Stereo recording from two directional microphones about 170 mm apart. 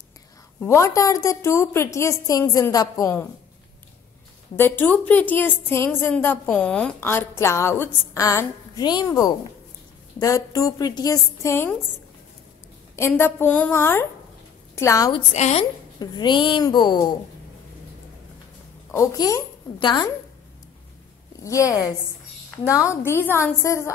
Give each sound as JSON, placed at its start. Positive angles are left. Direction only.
{"t": 0.6, "sound": "a woman's voice", "side_deg": 15}
{"t": 4.6, "sound": "a woman's voice", "side_deg": 10}
{"t": 12.9, "sound": "a woman's voice", "side_deg": 15}
{"t": 15.1, "sound": "a woman's voice", "side_deg": 40}
{"t": 16.0, "sound": "a woman's voice", "side_deg": 25}
{"t": 18.9, "sound": "a woman's voice", "side_deg": 20}
{"t": 21.5, "sound": "a woman's voice", "side_deg": 20}